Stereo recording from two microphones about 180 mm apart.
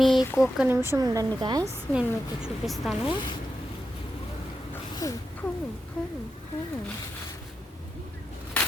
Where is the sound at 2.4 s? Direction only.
Centre (ahead or behind).